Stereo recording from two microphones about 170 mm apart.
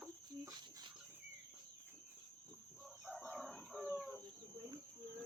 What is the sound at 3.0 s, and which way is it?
Chicken, centre (ahead or behind).